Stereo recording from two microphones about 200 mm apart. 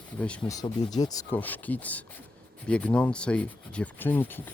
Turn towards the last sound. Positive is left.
turn(degrees=10)  # may be behind; listen again after turning